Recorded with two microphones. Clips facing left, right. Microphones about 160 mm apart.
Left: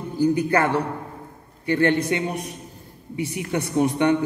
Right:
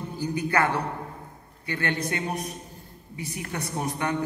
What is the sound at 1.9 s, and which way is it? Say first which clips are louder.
Speech: left 8 dB; 25° left (ahead or behind).